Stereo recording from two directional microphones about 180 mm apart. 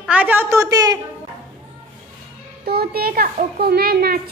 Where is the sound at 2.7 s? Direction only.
60° right (ahead or behind).